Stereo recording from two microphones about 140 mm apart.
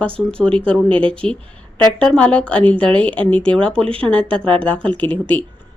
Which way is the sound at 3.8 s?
40° right (ahead or behind).